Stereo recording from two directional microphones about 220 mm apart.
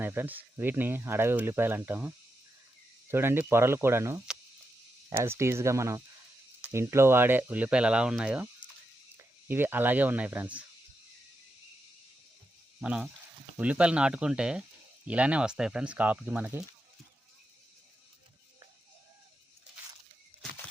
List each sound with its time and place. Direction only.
0.0 s speech: 10° right (ahead or behind)
9.5 s speech: 10° right (ahead or behind)
12.8 s speech: 5° right (ahead or behind)